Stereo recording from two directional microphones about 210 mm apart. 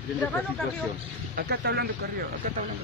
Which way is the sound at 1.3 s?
50° right (ahead or behind).